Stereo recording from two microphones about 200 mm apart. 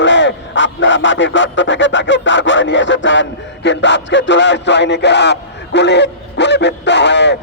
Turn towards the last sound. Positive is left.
turn(degrees=60)  # may be behind; listen again after turning